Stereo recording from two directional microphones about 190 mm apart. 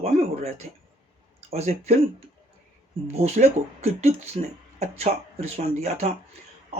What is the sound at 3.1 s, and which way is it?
Speech, 35° right (ahead or behind).